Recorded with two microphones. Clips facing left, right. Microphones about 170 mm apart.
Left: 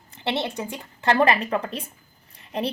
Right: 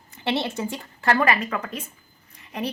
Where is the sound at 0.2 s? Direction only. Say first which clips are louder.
Right 1 dB; 20° left (ahead or behind).